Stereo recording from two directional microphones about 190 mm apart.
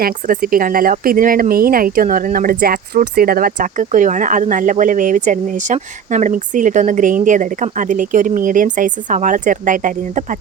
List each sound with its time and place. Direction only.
0.0 s speech: 50° right (ahead or behind)